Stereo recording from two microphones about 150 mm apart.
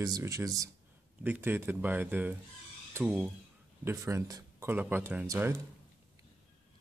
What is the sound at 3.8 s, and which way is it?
Speech, 20° right (ahead or behind).